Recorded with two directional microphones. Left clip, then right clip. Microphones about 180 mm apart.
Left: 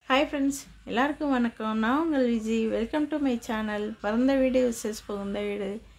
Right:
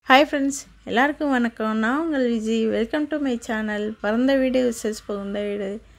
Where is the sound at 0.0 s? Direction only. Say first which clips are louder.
Right 9 dB; 50° right (ahead or behind).